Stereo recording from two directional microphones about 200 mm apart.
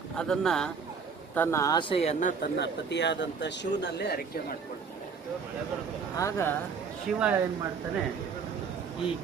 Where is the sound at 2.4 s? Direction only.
60° left (ahead or behind).